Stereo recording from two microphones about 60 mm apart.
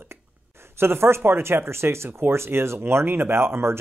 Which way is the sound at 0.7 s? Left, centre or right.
Right.